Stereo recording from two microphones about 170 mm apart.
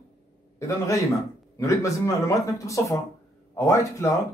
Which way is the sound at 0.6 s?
20° left (ahead or behind).